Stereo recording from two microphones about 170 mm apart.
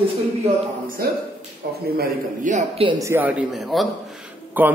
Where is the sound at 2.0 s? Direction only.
45° right (ahead or behind).